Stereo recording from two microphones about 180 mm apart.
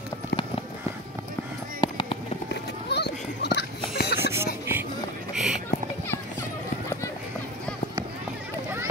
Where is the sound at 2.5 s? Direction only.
70° left (ahead or behind).